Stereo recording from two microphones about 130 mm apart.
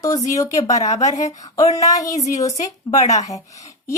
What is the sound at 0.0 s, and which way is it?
A woman's voice, 30° left (ahead or behind).